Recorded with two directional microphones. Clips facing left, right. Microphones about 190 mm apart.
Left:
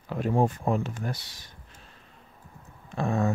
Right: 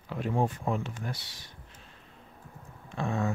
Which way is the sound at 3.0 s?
40° left (ahead or behind).